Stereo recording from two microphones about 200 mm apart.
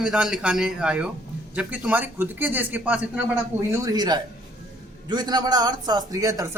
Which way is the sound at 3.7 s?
20° right (ahead or behind).